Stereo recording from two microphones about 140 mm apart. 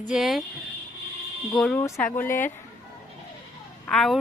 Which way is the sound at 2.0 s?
15° left (ahead or behind).